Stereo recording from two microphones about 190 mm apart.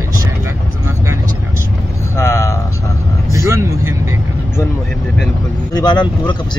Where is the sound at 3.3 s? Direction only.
15° right (ahead or behind).